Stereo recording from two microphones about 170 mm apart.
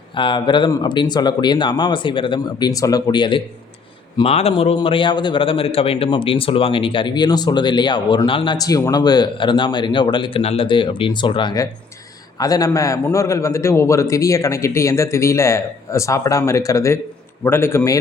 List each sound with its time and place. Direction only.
0.1 s a man's voice: 30° left (ahead or behind)